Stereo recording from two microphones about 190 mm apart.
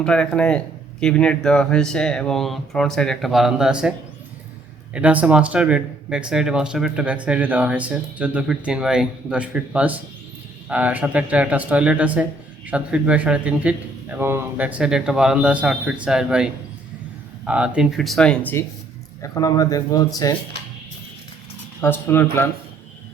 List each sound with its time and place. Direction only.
0.0 s speech: 5° left (ahead or behind)
4.9 s speech: 5° right (ahead or behind)
19.2 s speech: 20° left (ahead or behind)
21.8 s speech: 10° left (ahead or behind)